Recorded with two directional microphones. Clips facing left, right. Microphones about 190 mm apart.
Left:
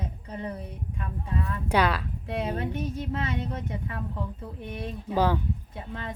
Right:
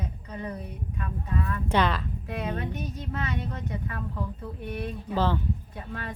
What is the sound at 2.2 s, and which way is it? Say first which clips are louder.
Speech: left 3 dB; 30° left (ahead or behind).